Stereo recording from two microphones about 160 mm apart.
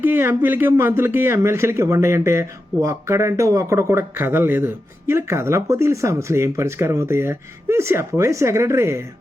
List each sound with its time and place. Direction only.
0.0 s speech: 15° right (ahead or behind)